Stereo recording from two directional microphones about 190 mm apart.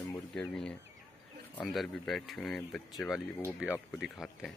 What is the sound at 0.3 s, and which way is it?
Speech, 5° left (ahead or behind).